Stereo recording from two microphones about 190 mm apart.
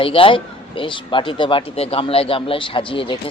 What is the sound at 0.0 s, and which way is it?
Speech, 30° left (ahead or behind).